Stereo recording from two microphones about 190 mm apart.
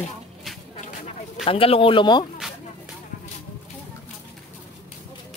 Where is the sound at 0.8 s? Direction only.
35° left (ahead or behind).